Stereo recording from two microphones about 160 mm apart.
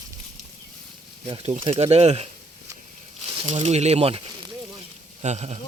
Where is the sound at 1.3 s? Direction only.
40° right (ahead or behind).